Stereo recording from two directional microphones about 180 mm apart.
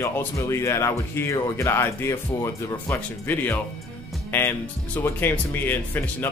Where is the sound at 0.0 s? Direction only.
15° left (ahead or behind).